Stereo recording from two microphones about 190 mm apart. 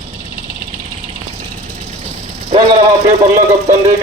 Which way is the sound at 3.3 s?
35° right (ahead or behind).